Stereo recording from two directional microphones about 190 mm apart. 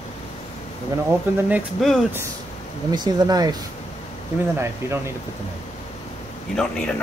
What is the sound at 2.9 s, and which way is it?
Speech, 20° right (ahead or behind).